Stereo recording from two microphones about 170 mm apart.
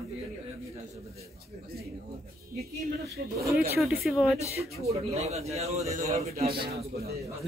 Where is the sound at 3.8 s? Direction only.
Centre (ahead or behind).